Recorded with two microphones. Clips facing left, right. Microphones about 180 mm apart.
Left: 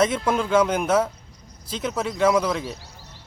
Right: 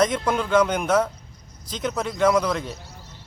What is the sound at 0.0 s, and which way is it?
Speech, 5° left (ahead or behind).